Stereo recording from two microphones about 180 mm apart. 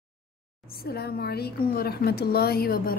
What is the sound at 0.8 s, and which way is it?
A woman's voice, 60° left (ahead or behind).